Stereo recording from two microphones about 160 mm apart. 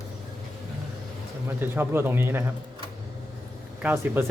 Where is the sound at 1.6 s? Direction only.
15° right (ahead or behind).